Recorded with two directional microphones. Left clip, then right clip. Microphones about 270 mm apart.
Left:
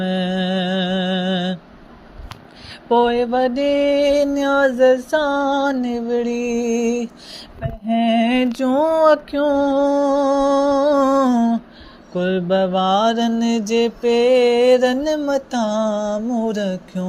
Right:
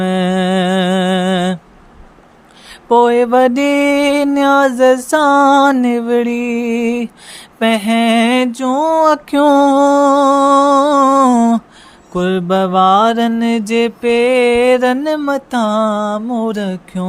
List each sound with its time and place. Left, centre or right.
0.0 s music: right
2.6 s mantra: centre